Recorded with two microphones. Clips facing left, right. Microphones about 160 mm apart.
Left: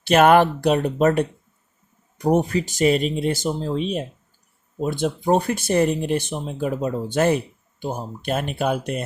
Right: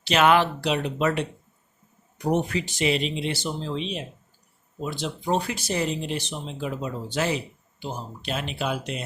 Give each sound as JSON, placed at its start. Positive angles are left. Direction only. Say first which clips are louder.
{"t": 0.0, "sound": "speech", "louder": "left 5 dB", "side_deg": 50}